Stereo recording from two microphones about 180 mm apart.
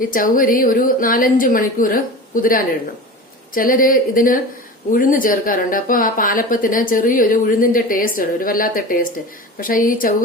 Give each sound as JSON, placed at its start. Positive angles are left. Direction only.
{"t": 0.0, "sound": "a woman's voice", "side_deg": 50}